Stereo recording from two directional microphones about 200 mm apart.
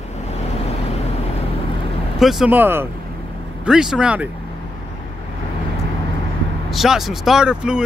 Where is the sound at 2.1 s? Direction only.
Centre (ahead or behind).